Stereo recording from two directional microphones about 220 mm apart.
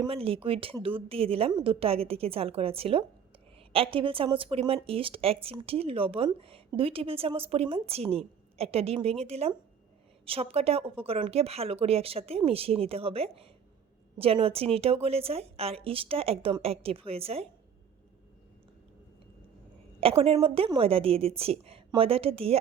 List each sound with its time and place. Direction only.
0.0 s speech: 25° right (ahead or behind)
20.0 s speech: 25° right (ahead or behind)